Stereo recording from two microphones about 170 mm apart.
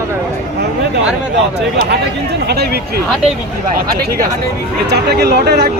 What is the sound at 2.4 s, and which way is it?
Speech, 70° right (ahead or behind).